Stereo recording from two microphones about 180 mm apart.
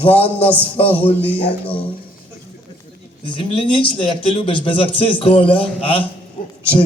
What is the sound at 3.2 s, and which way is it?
A man's voice, 25° left (ahead or behind).